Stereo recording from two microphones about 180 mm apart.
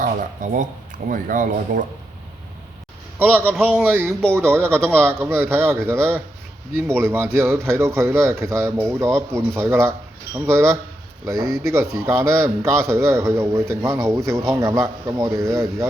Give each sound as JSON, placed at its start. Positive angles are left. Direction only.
{"t": 0.0, "sound": "speech", "side_deg": -45}
{"t": 3.2, "sound": "speech", "side_deg": -10}